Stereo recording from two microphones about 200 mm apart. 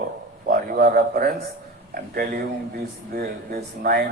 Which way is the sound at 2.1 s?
50° right (ahead or behind).